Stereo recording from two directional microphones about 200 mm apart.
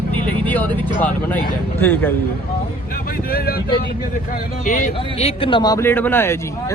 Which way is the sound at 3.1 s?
50° left (ahead or behind).